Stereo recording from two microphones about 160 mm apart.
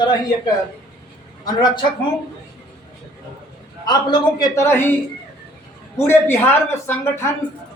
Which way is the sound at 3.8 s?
25° left (ahead or behind).